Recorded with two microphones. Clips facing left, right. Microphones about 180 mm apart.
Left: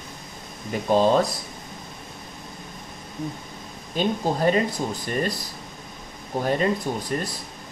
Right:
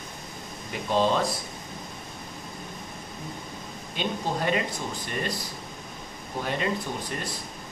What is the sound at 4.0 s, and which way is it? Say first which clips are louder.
Speech: left 6 dB; 40° left (ahead or behind).